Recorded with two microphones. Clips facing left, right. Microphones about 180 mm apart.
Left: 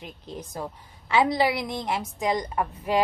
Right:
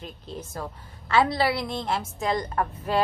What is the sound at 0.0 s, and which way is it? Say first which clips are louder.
A woman's voice: right 1 dB; 15° left (ahead or behind).